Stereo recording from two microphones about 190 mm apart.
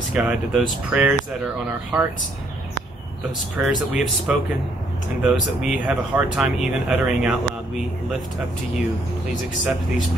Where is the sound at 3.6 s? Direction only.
5° right (ahead or behind).